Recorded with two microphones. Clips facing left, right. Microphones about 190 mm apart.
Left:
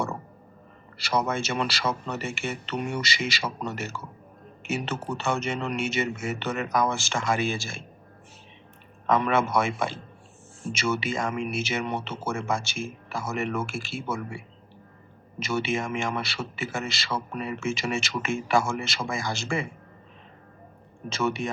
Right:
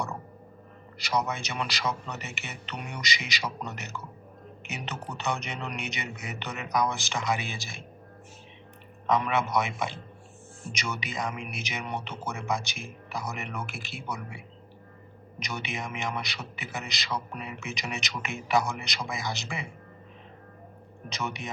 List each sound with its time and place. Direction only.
0.9 s a man's voice: 15° right (ahead or behind)
9.2 s a man's voice: 20° right (ahead or behind)
21.1 s a man's voice: 20° right (ahead or behind)